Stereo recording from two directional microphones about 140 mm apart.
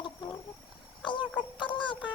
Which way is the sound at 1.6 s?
35° left (ahead or behind).